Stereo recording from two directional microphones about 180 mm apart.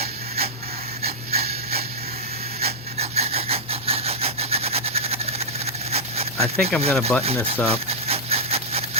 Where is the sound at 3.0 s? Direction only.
35° right (ahead or behind).